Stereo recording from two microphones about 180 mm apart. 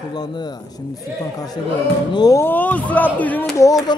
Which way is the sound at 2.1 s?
20° left (ahead or behind).